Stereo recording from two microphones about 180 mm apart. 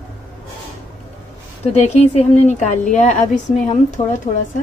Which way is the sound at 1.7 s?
40° left (ahead or behind).